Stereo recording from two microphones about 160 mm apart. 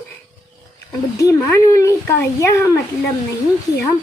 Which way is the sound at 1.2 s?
20° left (ahead or behind).